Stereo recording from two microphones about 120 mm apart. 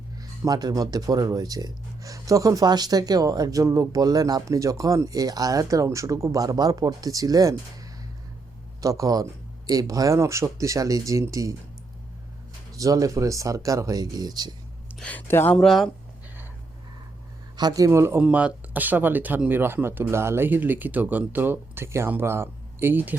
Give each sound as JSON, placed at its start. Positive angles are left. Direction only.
{"t": 0.2, "sound": "speech", "side_deg": -30}
{"t": 8.8, "sound": "speech", "side_deg": -30}
{"t": 12.7, "sound": "speech", "side_deg": -30}
{"t": 14.9, "sound": "speech", "side_deg": 10}
{"t": 15.5, "sound": "speech", "side_deg": 0}
{"t": 17.6, "sound": "speech", "side_deg": -35}
{"t": 18.2, "sound": "speech", "side_deg": -10}